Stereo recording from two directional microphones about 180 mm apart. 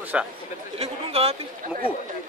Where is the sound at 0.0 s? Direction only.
10° right (ahead or behind).